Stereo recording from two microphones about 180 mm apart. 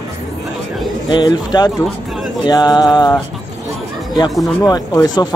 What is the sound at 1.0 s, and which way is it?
Speech, 25° left (ahead or behind).